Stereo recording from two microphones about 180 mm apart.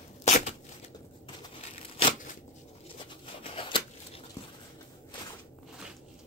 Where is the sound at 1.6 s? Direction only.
30° left (ahead or behind).